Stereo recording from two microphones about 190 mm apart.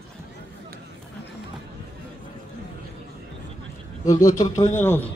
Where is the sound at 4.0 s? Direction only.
15° left (ahead or behind).